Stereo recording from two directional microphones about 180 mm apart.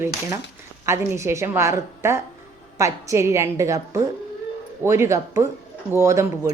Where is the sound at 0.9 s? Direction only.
15° right (ahead or behind).